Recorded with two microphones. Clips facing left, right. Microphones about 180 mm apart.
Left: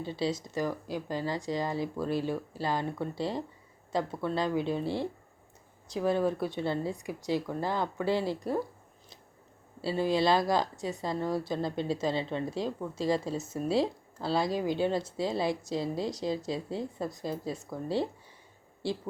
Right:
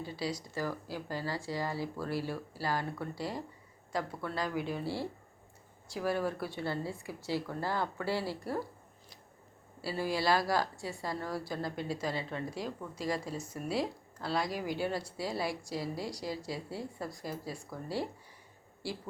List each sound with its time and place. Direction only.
0.0 s a woman's voice: 25° left (ahead or behind)
9.8 s a woman's voice: 20° left (ahead or behind)